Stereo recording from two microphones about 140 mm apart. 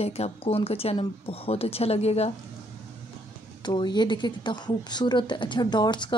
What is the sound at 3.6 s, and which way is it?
A woman's voice, 30° left (ahead or behind).